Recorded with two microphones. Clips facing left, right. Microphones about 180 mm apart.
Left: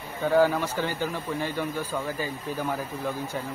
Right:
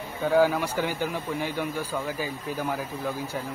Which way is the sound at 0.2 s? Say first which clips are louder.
Even; 10° right (ahead or behind).